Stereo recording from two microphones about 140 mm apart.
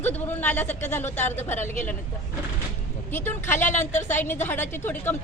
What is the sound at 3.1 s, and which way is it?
Speech, 15° left (ahead or behind).